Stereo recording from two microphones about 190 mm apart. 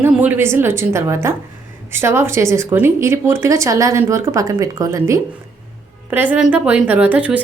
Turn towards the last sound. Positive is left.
turn(degrees=-5)  # may be behind; listen again after turning